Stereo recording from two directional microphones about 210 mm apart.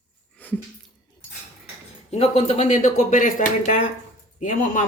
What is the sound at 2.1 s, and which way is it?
Speech, 30° left (ahead or behind).